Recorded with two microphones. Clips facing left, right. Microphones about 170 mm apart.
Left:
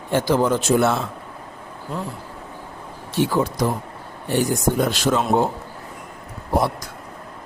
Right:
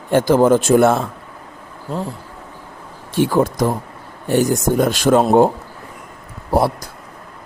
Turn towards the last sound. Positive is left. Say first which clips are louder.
# right 4 dB
turn(degrees=-35)  # may be behind; listen again after turning